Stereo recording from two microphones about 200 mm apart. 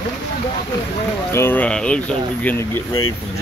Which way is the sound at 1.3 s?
10° left (ahead or behind).